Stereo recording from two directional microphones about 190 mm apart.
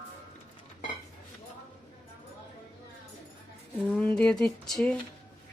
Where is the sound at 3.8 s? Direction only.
5° left (ahead or behind).